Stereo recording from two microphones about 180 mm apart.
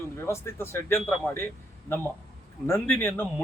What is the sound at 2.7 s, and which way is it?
Speech, 15° left (ahead or behind).